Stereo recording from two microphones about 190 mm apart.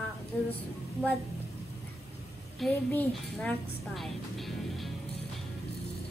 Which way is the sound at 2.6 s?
5° left (ahead or behind).